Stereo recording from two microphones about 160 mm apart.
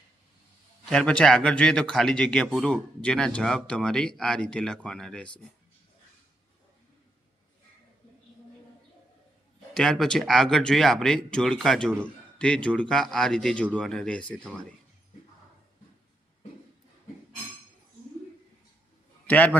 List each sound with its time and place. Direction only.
0.9 s speech: 5° left (ahead or behind)
9.7 s speech: 5° left (ahead or behind)